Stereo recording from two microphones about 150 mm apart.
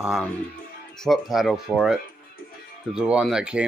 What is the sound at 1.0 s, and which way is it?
Speech, centre (ahead or behind).